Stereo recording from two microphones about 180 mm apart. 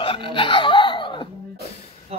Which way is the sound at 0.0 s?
30° left (ahead or behind).